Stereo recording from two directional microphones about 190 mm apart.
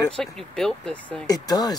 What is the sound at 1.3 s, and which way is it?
Speech, 20° left (ahead or behind).